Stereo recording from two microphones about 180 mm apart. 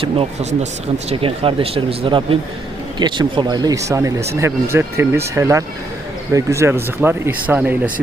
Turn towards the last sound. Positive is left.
turn(degrees=-10)  # may be behind; listen again after turning